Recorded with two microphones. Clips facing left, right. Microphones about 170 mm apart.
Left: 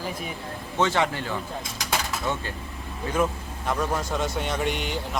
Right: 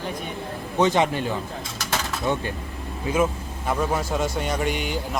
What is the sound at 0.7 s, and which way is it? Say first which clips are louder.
Speech: right 4 dB; 15° right (ahead or behind).